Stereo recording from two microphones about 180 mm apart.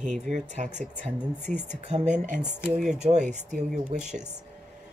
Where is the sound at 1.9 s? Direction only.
40° right (ahead or behind).